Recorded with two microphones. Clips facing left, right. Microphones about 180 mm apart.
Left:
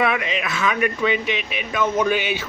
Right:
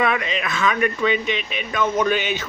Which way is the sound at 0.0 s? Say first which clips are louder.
Even; 5° left (ahead or behind).